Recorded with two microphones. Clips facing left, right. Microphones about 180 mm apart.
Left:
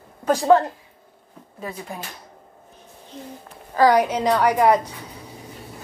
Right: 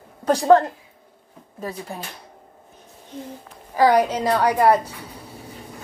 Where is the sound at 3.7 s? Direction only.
10° right (ahead or behind).